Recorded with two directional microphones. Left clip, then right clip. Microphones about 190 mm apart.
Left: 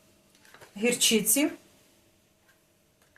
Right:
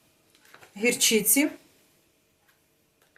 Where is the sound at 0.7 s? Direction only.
30° right (ahead or behind).